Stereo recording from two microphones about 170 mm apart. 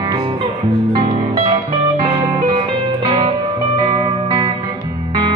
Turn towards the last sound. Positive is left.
turn(degrees=-35)  # may be behind; listen again after turning